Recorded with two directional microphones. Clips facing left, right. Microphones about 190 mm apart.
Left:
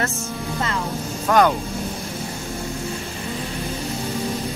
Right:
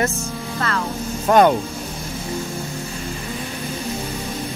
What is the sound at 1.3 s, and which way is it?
Speech, 25° right (ahead or behind).